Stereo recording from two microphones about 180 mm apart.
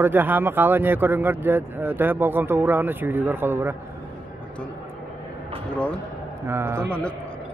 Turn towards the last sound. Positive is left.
turn(degrees=-15)  # may be behind; listen again after turning